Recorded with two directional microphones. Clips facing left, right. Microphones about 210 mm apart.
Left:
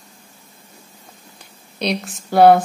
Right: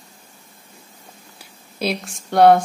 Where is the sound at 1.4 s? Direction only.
5° right (ahead or behind).